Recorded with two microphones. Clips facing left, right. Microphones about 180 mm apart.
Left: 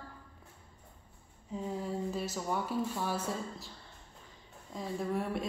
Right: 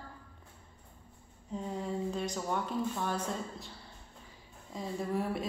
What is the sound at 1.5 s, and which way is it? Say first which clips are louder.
A woman's voice: even; centre (ahead or behind).